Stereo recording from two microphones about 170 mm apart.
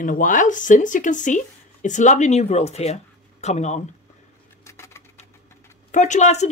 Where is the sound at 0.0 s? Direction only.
50° left (ahead or behind).